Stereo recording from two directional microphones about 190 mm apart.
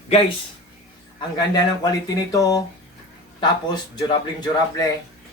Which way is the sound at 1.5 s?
20° left (ahead or behind).